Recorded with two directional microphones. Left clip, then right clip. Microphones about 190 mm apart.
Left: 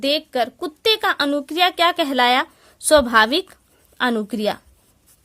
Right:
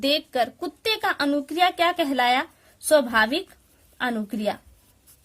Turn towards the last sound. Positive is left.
turn(degrees=45)  # may be behind; listen again after turning